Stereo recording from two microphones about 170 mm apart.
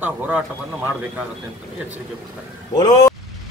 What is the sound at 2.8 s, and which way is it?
Speech, 20° left (ahead or behind).